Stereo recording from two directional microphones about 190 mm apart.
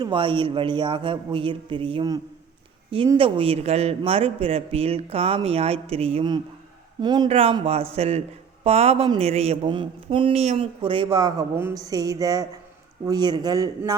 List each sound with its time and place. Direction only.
0.0 s speech: 25° right (ahead or behind)